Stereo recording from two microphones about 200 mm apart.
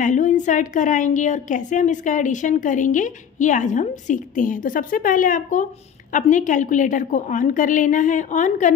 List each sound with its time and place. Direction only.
0.0 s a woman's voice: 35° left (ahead or behind)